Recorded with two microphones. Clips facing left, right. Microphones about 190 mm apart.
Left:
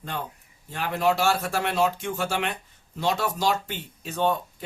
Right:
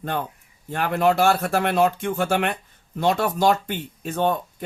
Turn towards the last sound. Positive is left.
turn(degrees=-50)  # may be behind; listen again after turning